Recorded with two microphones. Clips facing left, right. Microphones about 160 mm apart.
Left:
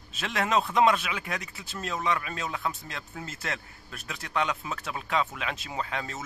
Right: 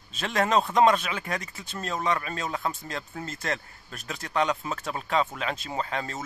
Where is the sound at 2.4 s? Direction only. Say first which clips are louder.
Right 2 dB; 40° right (ahead or behind).